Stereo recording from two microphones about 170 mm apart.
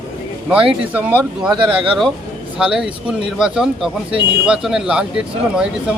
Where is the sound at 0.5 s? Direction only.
5° right (ahead or behind).